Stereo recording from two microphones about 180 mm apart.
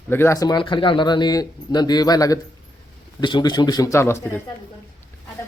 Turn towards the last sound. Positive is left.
turn(degrees=15)  # may be behind; listen again after turning